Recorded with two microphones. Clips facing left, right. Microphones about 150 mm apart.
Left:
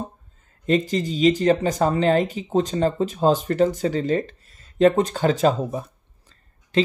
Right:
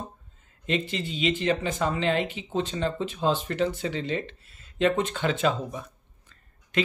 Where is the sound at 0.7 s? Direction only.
40° left (ahead or behind).